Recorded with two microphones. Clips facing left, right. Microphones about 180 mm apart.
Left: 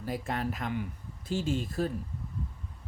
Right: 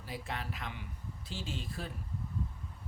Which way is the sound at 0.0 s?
45° left (ahead or behind).